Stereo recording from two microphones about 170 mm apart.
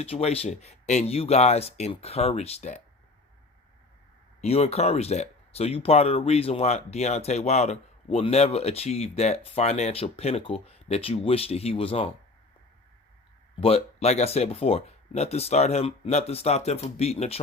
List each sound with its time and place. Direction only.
0.0 s speech: 35° left (ahead or behind)
4.4 s speech: 40° left (ahead or behind)
13.6 s speech: 35° left (ahead or behind)